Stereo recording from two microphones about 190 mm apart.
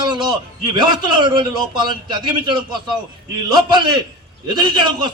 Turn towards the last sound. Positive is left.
turn(degrees=-25)  # may be behind; listen again after turning